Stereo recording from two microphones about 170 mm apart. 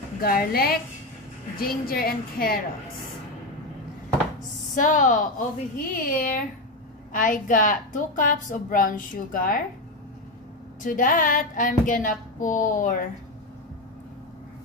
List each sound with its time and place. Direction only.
0.2 s a woman's voice: 65° left (ahead or behind)
4.7 s a woman's voice: 50° left (ahead or behind)
10.8 s a woman's voice: 50° left (ahead or behind)